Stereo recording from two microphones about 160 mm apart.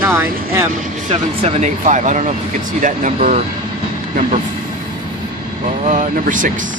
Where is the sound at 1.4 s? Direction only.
45° right (ahead or behind).